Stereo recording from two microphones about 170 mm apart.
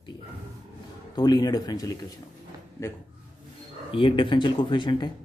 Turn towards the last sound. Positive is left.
turn(degrees=25)  # may be behind; listen again after turning